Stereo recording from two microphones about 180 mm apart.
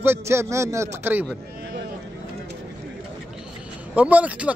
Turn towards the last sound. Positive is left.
turn(degrees=-10)  # may be behind; listen again after turning